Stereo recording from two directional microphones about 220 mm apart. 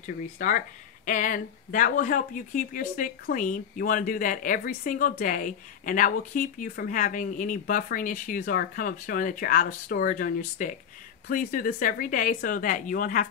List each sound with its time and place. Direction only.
0.0 s speech: 35° left (ahead or behind)